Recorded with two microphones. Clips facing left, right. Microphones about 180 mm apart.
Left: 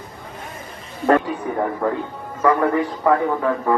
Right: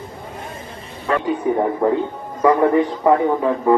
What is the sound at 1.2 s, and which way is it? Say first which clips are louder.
A man's voice: right 5 dB; 20° right (ahead or behind).